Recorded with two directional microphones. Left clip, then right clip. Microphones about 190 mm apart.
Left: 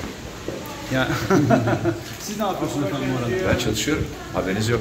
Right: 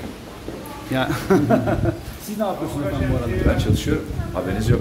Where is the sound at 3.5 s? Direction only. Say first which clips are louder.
Left 1 dB; 15° right (ahead or behind).